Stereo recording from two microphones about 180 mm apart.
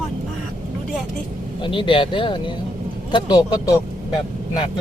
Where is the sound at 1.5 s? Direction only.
30° left (ahead or behind).